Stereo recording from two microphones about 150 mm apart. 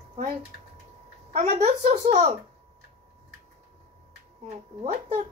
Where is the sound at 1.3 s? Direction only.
45° right (ahead or behind).